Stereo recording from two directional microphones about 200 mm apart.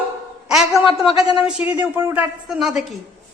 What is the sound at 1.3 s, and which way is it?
A woman's voice, 5° right (ahead or behind).